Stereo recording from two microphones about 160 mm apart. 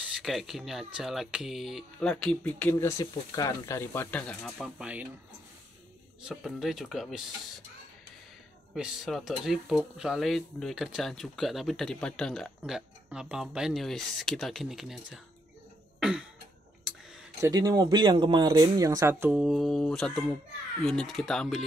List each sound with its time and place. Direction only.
0.2 s speech: centre (ahead or behind)
4.6 s speech: 5° right (ahead or behind)
6.2 s speech: 5° right (ahead or behind)
8.7 s speech: centre (ahead or behind)
16.0 s cough: 5° right (ahead or behind)
17.4 s speech: 25° right (ahead or behind)
19.3 s speech: 5° right (ahead or behind)